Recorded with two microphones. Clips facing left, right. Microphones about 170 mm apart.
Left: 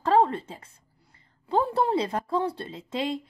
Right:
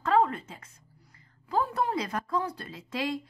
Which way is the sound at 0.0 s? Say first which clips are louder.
Left 3 dB; 30° left (ahead or behind).